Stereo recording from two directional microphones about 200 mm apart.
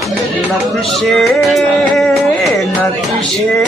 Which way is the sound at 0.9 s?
Centre (ahead or behind).